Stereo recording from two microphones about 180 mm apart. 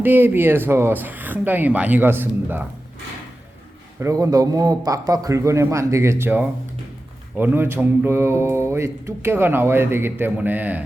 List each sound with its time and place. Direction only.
0.0 s speech: 10° right (ahead or behind)
4.0 s a man's voice: 20° right (ahead or behind)